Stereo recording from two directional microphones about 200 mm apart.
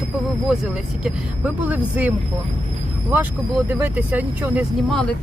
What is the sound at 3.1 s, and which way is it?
Speech, 10° right (ahead or behind).